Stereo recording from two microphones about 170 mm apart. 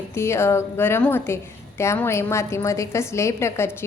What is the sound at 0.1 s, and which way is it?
A woman's voice, 15° left (ahead or behind).